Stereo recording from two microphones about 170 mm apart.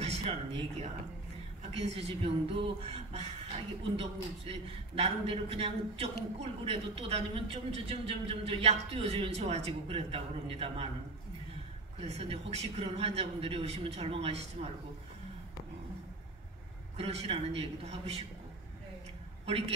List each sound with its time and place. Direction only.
0.0 s a sound: 40° right (ahead or behind)
1.7 s a man's voice: 35° right (ahead or behind)
12.0 s a man's voice: 40° right (ahead or behind)
16.9 s a man's voice: 35° right (ahead or behind)